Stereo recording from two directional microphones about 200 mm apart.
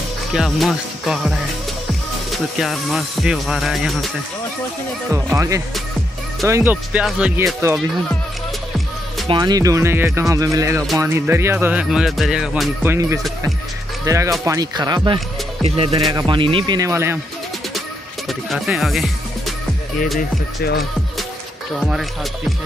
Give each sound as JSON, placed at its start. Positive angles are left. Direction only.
{"t": 0.3, "sound": "speech", "side_deg": 0}
{"t": 5.1, "sound": "speech", "side_deg": -15}
{"t": 9.3, "sound": "speech", "side_deg": -20}
{"t": 18.5, "sound": "speech", "side_deg": 0}
{"t": 20.2, "sound": "speech", "side_deg": 50}
{"t": 21.7, "sound": "speech", "side_deg": 0}